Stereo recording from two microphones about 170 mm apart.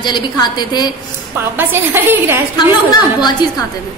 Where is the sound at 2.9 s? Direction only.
25° left (ahead or behind).